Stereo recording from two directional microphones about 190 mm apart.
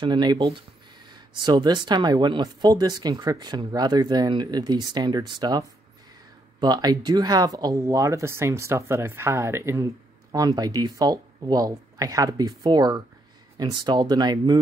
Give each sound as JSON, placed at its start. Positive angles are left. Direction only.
{"t": 0.0, "sound": "speech", "side_deg": -25}